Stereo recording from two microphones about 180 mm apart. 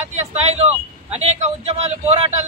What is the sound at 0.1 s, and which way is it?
Speech, 35° right (ahead or behind).